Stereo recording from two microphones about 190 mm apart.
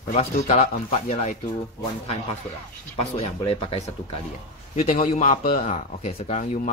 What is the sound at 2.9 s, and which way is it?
Speech, 30° left (ahead or behind).